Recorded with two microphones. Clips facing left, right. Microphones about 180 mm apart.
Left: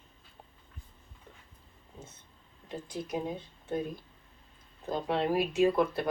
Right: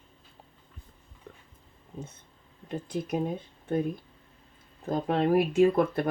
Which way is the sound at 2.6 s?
55° right (ahead or behind).